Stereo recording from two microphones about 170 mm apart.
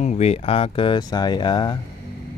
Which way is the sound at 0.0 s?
40° left (ahead or behind).